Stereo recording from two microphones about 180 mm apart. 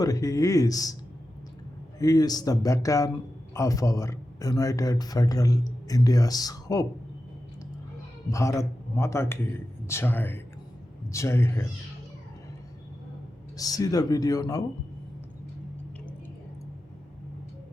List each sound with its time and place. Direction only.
0.0 s a man's voice: 20° left (ahead or behind)
2.0 s a man's voice: 20° left (ahead or behind)
8.3 s a man's voice: 15° left (ahead or behind)
13.6 s a man's voice: 20° left (ahead or behind)